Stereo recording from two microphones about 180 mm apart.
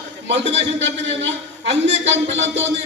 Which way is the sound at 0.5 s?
90° right.